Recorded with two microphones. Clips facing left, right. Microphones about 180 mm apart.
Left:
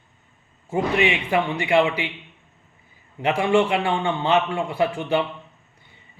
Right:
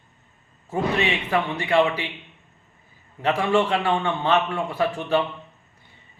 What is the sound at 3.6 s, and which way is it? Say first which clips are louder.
Speech: left 3 dB; 10° left (ahead or behind).